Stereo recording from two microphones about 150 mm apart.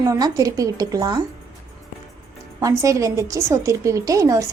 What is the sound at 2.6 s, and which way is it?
Speech, 20° right (ahead or behind).